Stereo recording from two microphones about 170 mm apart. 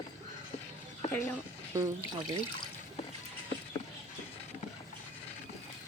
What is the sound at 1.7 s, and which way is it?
Speech, 20° right (ahead or behind).